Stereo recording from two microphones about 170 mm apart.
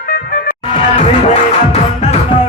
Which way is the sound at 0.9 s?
40° left (ahead or behind).